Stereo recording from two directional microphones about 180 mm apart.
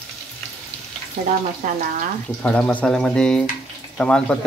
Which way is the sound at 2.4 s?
5° left (ahead or behind).